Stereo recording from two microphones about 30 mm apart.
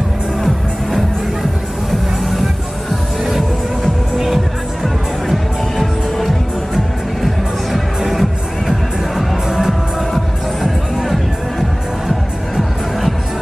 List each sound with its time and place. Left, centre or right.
1.9 s music: centre
4.8 s music: centre
8.1 s music: centre
9.5 s music: centre